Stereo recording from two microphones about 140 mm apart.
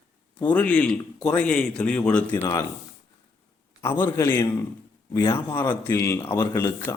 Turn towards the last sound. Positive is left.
turn(degrees=15)  # may be behind; listen again after turning